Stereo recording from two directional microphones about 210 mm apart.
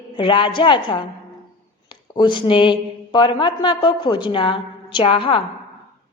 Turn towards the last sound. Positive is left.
turn(degrees=25)  # may be behind; listen again after turning